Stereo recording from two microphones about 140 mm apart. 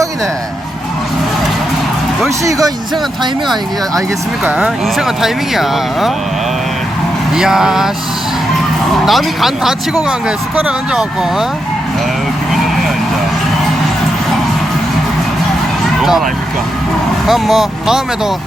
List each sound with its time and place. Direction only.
2.4 s speech: 25° right (ahead or behind)
4.4 s speech: 5° right (ahead or behind)
7.3 s speech: 5° right (ahead or behind)
9.0 s speech: centre (ahead or behind)
16.0 s speech: centre (ahead or behind)